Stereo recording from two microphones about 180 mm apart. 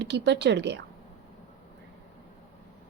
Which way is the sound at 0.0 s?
70° right (ahead or behind).